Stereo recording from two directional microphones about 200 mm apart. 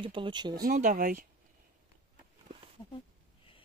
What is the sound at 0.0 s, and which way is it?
Speech, 25° right (ahead or behind).